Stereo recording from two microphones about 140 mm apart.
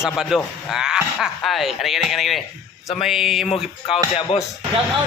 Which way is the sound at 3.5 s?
40° left (ahead or behind).